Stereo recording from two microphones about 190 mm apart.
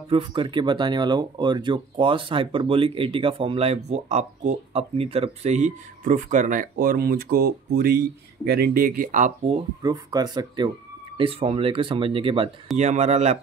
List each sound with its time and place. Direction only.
0.1 s speech: 25° right (ahead or behind); by 9.3 s 45° right (ahead or behind)
9.5 s speech: 20° right (ahead or behind)